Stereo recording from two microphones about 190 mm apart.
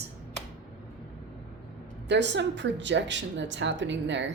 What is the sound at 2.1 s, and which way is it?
Speech, 65° right (ahead or behind).